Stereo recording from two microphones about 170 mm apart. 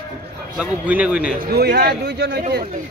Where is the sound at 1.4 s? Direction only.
70° right (ahead or behind).